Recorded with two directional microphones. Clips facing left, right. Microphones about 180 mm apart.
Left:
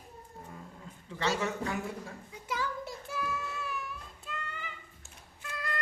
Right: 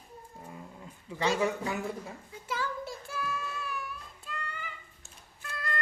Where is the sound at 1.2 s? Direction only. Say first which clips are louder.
Right 3 dB; 10° right (ahead or behind).